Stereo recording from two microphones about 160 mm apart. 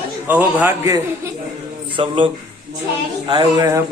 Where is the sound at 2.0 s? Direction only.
35° right (ahead or behind).